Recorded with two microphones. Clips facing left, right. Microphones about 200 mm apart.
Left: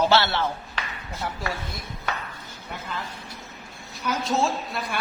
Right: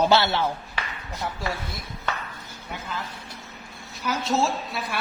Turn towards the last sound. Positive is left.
turn(degrees=0)  # may be behind; listen again after turning